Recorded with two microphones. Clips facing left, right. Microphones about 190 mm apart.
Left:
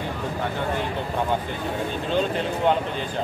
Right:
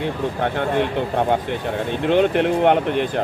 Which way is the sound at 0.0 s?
65° right (ahead or behind).